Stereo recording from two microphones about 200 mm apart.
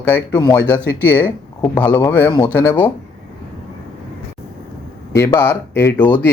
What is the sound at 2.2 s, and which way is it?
Speech, 20° left (ahead or behind).